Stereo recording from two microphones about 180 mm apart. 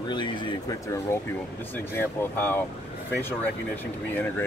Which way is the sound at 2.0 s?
10° left (ahead or behind).